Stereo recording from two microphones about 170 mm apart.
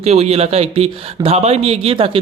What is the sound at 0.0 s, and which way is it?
Speech, 35° right (ahead or behind).